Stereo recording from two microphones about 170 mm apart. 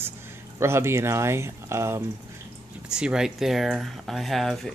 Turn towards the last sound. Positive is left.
turn(degrees=0)  # may be behind; listen again after turning